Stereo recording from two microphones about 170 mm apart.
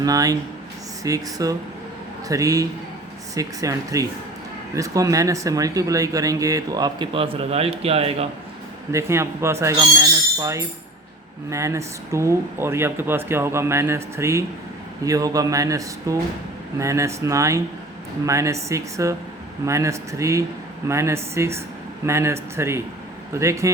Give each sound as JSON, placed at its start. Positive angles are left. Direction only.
{"t": 0.0, "sound": "speech", "side_deg": -20}
{"t": 8.9, "sound": "speech", "side_deg": -15}